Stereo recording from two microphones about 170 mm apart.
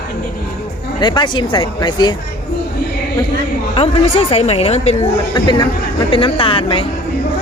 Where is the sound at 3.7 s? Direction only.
35° left (ahead or behind).